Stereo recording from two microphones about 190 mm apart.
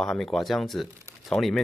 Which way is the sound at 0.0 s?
Centre (ahead or behind).